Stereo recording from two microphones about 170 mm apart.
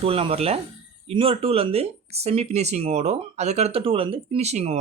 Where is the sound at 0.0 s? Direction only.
35° right (ahead or behind).